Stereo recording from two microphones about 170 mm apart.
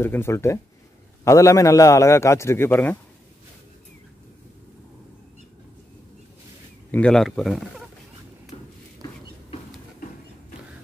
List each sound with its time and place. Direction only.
0.0 s a man's voice: 15° left (ahead or behind)
6.9 s speech: 5° left (ahead or behind)